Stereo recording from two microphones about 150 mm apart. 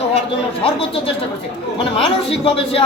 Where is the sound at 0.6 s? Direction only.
40° left (ahead or behind).